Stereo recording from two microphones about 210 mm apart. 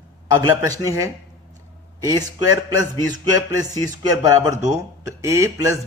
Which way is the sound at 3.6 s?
15° right (ahead or behind).